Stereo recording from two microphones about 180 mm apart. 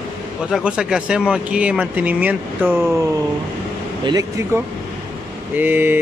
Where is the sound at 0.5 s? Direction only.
5° right (ahead or behind).